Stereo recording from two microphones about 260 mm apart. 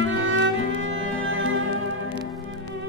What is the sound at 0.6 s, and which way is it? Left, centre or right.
Music, left.